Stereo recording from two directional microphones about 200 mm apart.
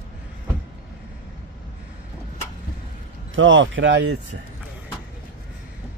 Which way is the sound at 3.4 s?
70° right (ahead or behind).